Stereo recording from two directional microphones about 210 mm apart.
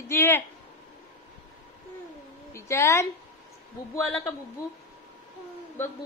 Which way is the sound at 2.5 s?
15° left (ahead or behind).